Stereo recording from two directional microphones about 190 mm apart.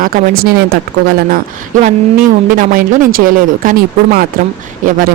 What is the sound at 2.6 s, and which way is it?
Speech, 45° right (ahead or behind).